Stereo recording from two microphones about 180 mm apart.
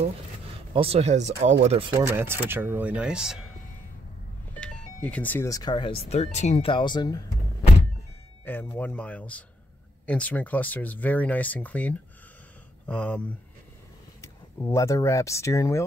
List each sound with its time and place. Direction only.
0.7 s speech: 35° right (ahead or behind); by 3.4 s 5° right (ahead or behind)
4.6 s speech: 5° left (ahead or behind); by 7.2 s 25° left (ahead or behind)
8.5 s speech: 10° left (ahead or behind)
14.2 s speech: 15° left (ahead or behind)